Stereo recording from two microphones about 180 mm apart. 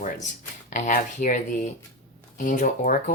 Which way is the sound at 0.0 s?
50° left (ahead or behind).